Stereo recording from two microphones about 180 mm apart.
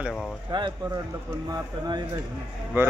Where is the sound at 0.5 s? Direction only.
20° right (ahead or behind).